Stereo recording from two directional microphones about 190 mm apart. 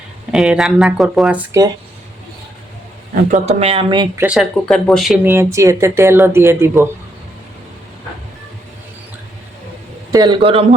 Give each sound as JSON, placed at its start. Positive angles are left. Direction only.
{"t": 0.3, "sound": "speech", "side_deg": -5}
{"t": 3.2, "sound": "speech", "side_deg": -40}
{"t": 4.2, "sound": "speech", "side_deg": -5}
{"t": 10.1, "sound": "speech", "side_deg": -20}